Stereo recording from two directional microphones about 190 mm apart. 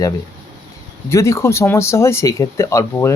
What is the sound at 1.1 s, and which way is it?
Speech, 15° left (ahead or behind).